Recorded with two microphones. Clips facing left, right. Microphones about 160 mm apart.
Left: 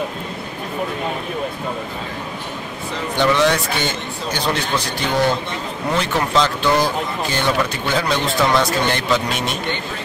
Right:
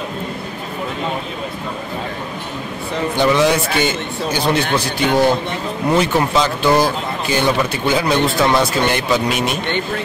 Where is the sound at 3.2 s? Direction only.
10° right (ahead or behind).